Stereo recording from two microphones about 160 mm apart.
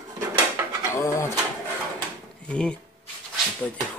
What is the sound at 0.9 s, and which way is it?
Speech, 20° left (ahead or behind).